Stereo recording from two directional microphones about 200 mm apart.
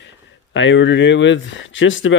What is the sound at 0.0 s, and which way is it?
Speech, 65° left (ahead or behind).